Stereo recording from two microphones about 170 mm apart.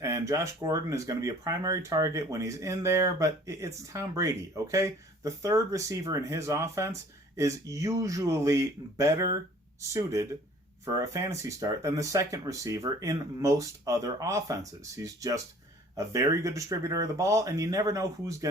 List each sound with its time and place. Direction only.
0.0 s speech: 20° right (ahead or behind)